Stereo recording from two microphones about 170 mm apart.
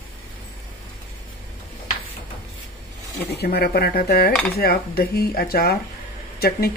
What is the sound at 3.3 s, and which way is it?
Speech, 70° left (ahead or behind).